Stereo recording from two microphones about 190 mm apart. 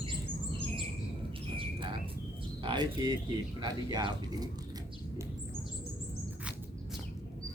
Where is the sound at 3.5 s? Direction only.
20° right (ahead or behind).